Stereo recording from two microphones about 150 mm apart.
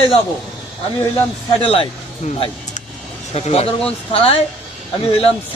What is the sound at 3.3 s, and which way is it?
Speech, 45° left (ahead or behind).